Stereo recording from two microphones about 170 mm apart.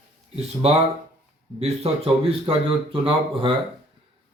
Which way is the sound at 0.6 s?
35° right (ahead or behind).